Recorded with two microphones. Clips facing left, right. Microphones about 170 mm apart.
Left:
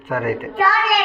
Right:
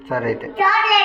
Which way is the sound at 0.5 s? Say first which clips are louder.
Left 1 dB; 15° right (ahead or behind).